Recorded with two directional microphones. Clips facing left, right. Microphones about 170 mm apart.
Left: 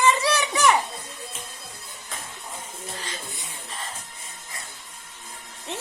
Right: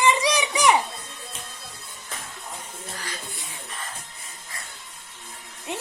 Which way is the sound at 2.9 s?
25° left (ahead or behind).